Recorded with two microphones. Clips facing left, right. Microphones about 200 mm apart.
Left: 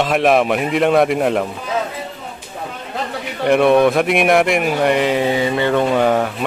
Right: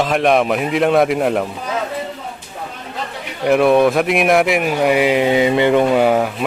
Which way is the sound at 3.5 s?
Centre (ahead or behind).